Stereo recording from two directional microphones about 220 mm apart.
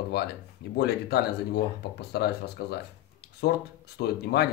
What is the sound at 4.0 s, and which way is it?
Speech, 45° left (ahead or behind).